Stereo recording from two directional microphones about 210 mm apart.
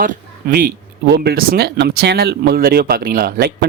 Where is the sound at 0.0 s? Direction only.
40° right (ahead or behind).